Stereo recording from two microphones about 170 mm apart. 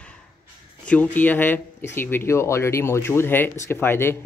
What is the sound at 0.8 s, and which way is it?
Speech, 10° left (ahead or behind).